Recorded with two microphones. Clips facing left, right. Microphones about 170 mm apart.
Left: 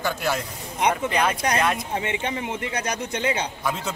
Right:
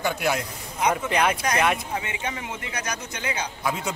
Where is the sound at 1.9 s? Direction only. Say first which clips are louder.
Left 4 dB; 25° left (ahead or behind).